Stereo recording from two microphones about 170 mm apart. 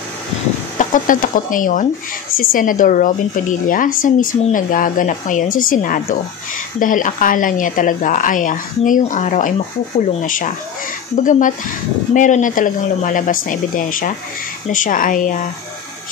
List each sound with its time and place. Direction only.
0.7 s a woman's voice: 50° left (ahead or behind)